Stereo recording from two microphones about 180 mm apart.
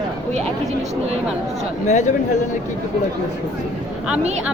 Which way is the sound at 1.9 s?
40° left (ahead or behind).